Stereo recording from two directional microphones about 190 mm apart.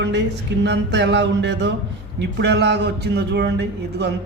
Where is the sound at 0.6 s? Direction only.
65° right (ahead or behind).